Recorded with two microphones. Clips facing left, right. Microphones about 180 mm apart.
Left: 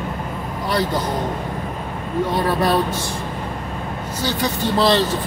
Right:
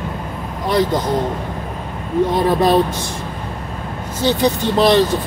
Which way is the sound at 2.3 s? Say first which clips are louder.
Right 3 dB; 20° right (ahead or behind).